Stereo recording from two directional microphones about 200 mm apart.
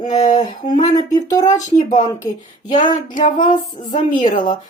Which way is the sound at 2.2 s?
15° left (ahead or behind).